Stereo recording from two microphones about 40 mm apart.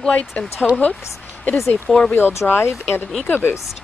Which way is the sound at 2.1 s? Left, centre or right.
Left.